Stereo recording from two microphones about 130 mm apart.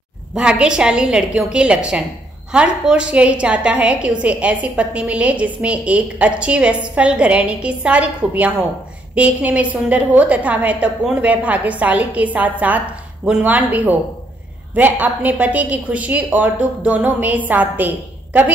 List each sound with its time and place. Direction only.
0.3 s a woman's voice: 5° right (ahead or behind)